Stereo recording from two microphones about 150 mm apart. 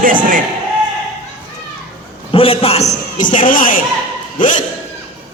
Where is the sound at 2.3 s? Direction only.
40° left (ahead or behind); by 3.8 s 65° left (ahead or behind).